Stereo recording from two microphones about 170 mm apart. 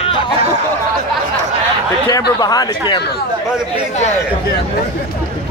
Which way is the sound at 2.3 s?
25° left (ahead or behind).